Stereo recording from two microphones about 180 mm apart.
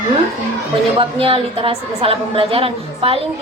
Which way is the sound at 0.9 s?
30° right (ahead or behind).